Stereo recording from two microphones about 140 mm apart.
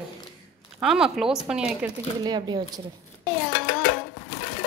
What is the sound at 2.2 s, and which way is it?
Speech, 30° right (ahead or behind).